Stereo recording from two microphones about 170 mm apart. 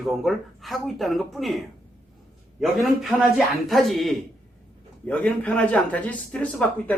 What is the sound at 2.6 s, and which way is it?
Speech, centre (ahead or behind).